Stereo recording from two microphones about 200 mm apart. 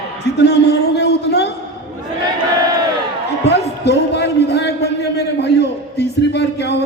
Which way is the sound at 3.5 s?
55° left (ahead or behind).